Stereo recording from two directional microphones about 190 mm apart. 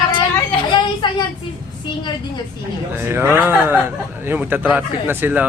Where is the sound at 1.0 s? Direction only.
25° left (ahead or behind).